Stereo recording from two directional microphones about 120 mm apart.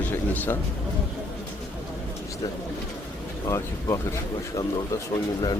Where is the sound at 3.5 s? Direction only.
30° left (ahead or behind).